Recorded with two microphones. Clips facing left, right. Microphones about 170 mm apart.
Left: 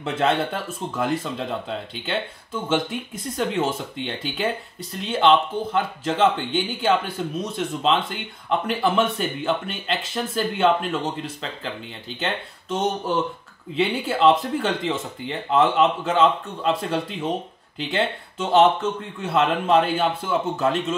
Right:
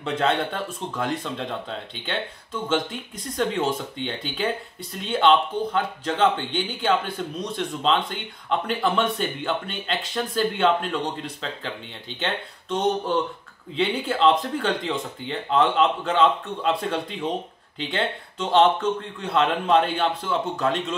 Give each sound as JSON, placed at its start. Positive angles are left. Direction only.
{"t": 0.0, "sound": "speech", "side_deg": 5}